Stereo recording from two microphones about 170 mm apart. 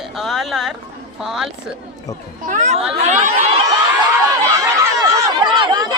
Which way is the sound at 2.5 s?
45° right (ahead or behind).